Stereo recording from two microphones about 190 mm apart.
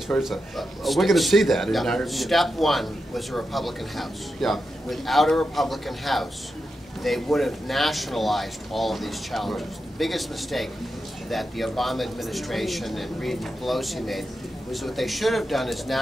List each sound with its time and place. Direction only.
0.1 s a man's voice: centre (ahead or behind)